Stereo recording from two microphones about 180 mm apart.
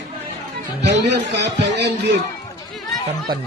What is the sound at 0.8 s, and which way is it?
A man's voice, 70° right (ahead or behind).